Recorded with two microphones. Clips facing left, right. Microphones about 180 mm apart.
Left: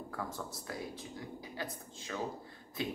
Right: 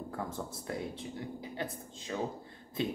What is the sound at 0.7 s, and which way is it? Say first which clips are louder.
Speech: right 7 dB; 25° right (ahead or behind).